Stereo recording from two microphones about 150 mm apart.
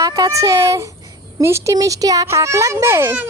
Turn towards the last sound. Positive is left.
turn(degrees=-15)  # may be behind; listen again after turning